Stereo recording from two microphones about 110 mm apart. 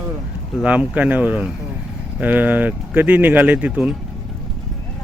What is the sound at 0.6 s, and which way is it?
Speech, 10° right (ahead or behind).